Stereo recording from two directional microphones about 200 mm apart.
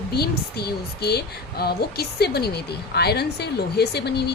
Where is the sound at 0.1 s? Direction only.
55° left (ahead or behind).